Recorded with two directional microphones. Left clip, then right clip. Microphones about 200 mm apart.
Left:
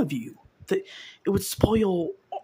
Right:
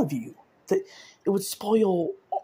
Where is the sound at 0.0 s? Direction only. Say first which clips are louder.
Even; 10° left (ahead or behind).